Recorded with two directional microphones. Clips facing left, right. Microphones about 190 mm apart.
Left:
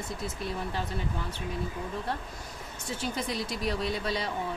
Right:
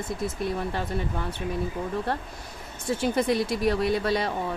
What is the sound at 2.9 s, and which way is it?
Speech, 55° right (ahead or behind).